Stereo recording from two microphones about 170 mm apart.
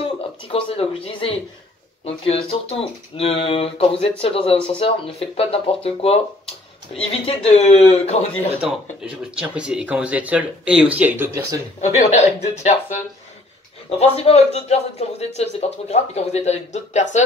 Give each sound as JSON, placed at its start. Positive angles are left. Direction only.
{"t": 0.0, "sound": "a man's voice", "side_deg": 35}
{"t": 8.6, "sound": "speech", "side_deg": -5}
{"t": 11.8, "sound": "a man's voice", "side_deg": 40}